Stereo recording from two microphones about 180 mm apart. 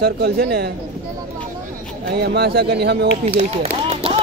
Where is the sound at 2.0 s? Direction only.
65° right (ahead or behind).